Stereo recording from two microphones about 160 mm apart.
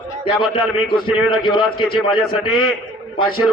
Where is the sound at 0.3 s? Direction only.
30° left (ahead or behind).